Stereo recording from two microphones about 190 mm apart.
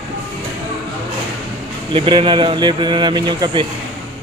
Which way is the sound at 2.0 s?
25° right (ahead or behind).